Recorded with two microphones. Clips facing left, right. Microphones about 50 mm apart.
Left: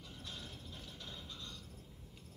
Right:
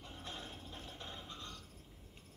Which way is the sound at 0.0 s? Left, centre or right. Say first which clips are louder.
Right 2 dB; right.